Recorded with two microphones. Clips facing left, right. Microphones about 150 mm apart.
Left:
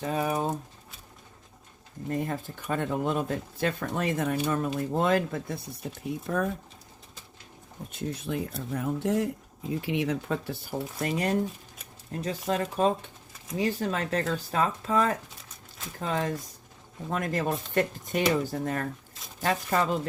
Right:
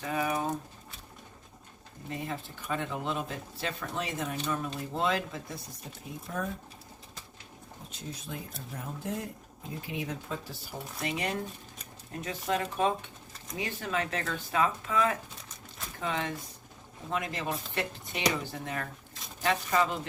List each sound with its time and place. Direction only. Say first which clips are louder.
0.0 s speech: left 3 dB; 35° left (ahead or behind)
2.0 s speech: left 6 dB; 50° left (ahead or behind)
6.1 s speech: left 7 dB; 65° left (ahead or behind)
7.9 s speech: left 10 dB; 60° left (ahead or behind)
12.2 s speech: left 3 dB; 35° left (ahead or behind)